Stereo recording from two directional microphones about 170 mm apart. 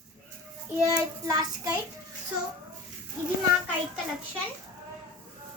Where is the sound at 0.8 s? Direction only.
20° right (ahead or behind).